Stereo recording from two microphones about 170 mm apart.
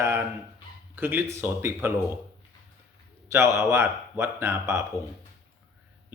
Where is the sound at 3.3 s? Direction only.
15° right (ahead or behind).